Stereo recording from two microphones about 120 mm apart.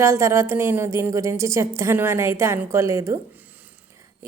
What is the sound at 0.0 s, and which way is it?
A woman's voice, 25° right (ahead or behind).